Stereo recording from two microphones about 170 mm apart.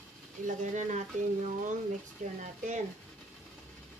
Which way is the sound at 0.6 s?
45° right (ahead or behind).